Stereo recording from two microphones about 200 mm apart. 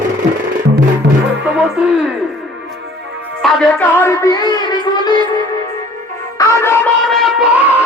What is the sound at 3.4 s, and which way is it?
Music, 10° left (ahead or behind).